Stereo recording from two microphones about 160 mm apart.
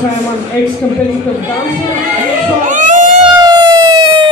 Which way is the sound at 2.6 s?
50° right (ahead or behind).